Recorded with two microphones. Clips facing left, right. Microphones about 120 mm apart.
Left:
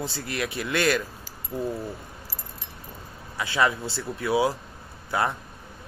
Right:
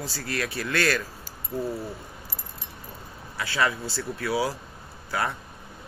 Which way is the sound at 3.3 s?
20° left (ahead or behind).